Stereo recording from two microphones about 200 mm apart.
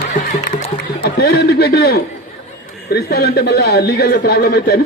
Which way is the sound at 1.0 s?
55° left (ahead or behind).